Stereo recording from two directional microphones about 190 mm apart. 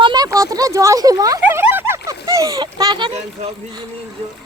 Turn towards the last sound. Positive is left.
turn(degrees=-30)  # may be behind; listen again after turning